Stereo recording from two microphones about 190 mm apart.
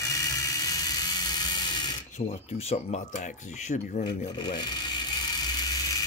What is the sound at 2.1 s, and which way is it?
Speech, 35° left (ahead or behind).